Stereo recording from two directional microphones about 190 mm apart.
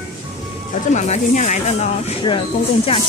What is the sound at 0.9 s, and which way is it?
Speech, 40° left (ahead or behind).